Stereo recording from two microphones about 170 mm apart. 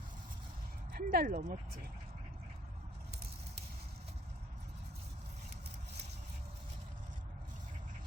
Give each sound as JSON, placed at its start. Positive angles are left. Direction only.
{"t": 0.9, "sound": "speech", "side_deg": -60}